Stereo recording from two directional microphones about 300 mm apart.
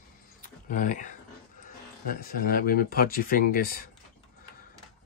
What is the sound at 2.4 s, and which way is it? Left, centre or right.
Speech, left.